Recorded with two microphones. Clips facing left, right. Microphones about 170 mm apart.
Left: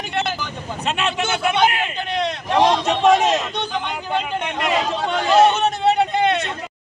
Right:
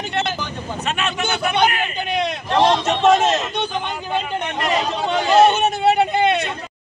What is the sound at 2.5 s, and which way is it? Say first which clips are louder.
Speech: even; 10° left (ahead or behind).